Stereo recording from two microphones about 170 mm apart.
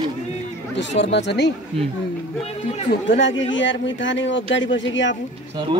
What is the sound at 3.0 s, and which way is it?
A man's voice, 90° left.